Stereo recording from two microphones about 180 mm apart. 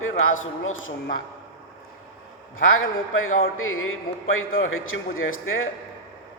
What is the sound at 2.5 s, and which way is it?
A man's voice, 90° left.